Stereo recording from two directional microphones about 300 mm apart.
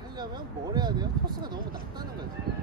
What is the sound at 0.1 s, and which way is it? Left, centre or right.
Speech, centre.